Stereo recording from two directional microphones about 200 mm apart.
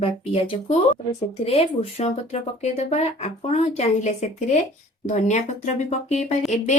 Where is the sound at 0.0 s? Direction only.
30° left (ahead or behind).